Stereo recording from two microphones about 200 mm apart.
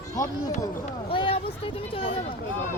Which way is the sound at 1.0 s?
25° left (ahead or behind).